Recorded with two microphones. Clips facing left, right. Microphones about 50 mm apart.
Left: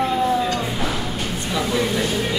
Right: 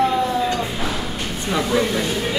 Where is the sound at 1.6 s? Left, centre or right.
Centre.